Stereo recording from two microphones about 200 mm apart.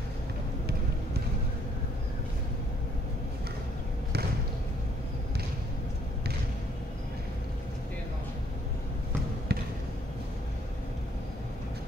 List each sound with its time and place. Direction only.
9.5 s basketball bounce: 55° right (ahead or behind)